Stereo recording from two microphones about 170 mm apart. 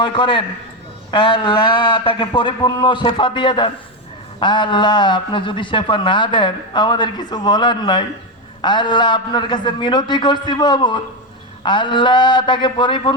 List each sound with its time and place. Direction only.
0.0 s a man's voice: 30° left (ahead or behind)